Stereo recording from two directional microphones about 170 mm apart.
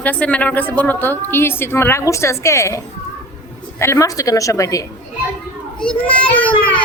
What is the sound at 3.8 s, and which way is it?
A woman's voice, 15° left (ahead or behind).